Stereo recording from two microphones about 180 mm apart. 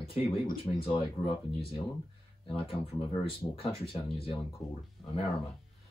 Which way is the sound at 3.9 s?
30° left (ahead or behind).